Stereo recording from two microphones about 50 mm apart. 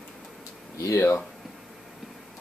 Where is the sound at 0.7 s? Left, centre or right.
Left.